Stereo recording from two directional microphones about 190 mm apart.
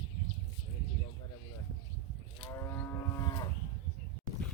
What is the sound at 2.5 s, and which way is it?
Moo, 15° left (ahead or behind).